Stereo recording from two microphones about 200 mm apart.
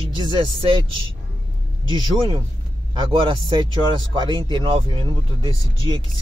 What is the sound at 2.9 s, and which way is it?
Speech, 25° right (ahead or behind).